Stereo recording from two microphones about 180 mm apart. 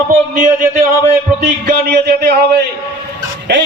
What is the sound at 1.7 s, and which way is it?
A man's voice, 60° right (ahead or behind).